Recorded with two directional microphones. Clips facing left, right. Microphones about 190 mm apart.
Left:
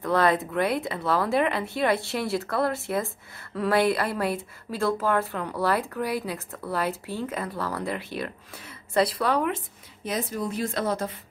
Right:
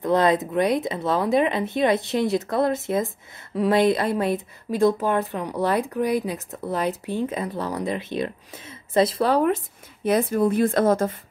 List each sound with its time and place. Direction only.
0.0 s speech: 20° right (ahead or behind); by 9.6 s 35° right (ahead or behind)
10.0 s speech: 55° right (ahead or behind)